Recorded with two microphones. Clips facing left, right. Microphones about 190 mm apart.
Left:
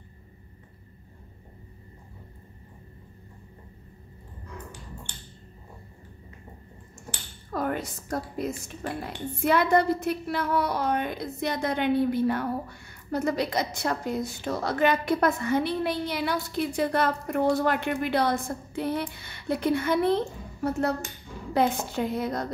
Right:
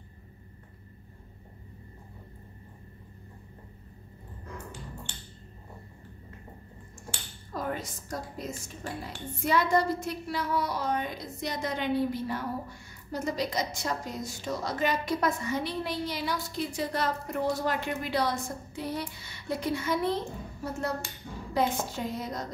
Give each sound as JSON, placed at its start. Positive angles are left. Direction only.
{"t": 7.5, "sound": "speech", "side_deg": 60}
{"t": 21.5, "sound": "speech", "side_deg": 60}